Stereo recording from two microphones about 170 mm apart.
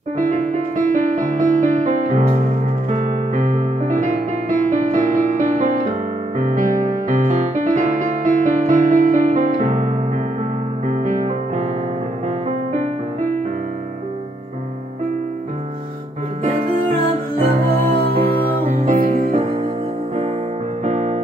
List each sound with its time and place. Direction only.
0.2 s music: 50° right (ahead or behind)
10.9 s music: 45° right (ahead or behind)
16.4 s music: 55° right (ahead or behind)
20.8 s music: 45° right (ahead or behind)